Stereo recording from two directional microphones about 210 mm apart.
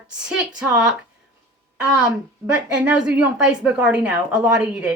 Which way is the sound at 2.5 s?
5° right (ahead or behind).